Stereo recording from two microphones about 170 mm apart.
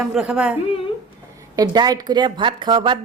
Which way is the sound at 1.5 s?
25° right (ahead or behind).